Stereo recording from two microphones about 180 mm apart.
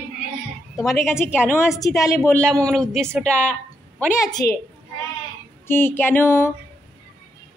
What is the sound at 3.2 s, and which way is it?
Music, 5° left (ahead or behind).